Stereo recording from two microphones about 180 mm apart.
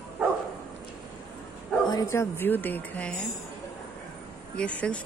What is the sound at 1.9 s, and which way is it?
Speech, 20° left (ahead or behind).